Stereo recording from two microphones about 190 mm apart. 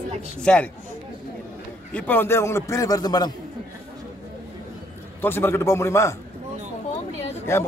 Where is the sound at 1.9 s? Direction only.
10° left (ahead or behind).